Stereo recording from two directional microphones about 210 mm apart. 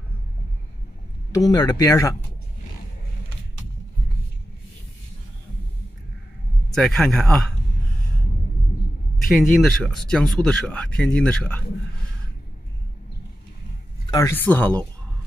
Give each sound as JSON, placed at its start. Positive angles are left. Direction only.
{"t": 1.3, "sound": "speech", "side_deg": 15}
{"t": 6.7, "sound": "speech", "side_deg": 0}
{"t": 9.2, "sound": "speech", "side_deg": 0}
{"t": 14.1, "sound": "speech", "side_deg": 10}